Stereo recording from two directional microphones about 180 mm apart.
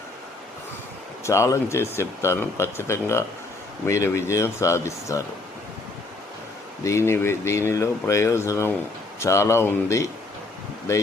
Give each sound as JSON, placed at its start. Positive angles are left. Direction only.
{"t": 1.2, "sound": "speech", "side_deg": 15}
{"t": 6.8, "sound": "speech", "side_deg": 15}